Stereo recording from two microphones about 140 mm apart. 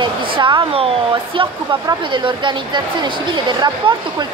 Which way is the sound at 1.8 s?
35° right (ahead or behind).